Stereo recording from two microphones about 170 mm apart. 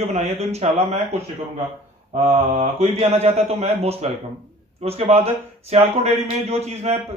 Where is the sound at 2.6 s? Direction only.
35° right (ahead or behind).